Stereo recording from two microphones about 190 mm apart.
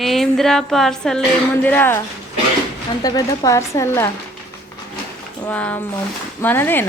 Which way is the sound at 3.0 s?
20° left (ahead or behind).